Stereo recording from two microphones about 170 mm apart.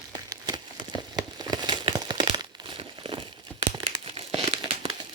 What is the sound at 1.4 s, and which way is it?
Crumpling, 25° right (ahead or behind).